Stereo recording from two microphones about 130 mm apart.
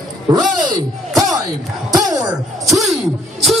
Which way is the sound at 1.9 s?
30° right (ahead or behind).